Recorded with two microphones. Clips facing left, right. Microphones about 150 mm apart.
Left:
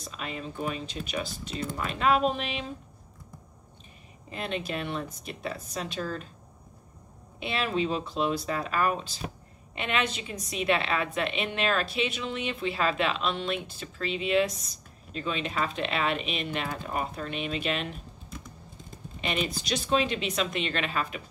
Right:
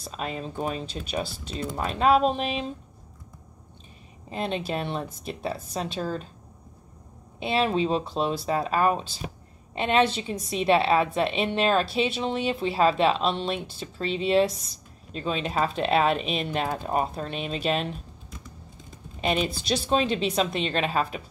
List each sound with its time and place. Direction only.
0.0 s a woman's voice: 40° right (ahead or behind)
4.3 s a woman's voice: 35° right (ahead or behind)
7.3 s a woman's voice: 35° right (ahead or behind)
19.2 s a woman's voice: 35° right (ahead or behind)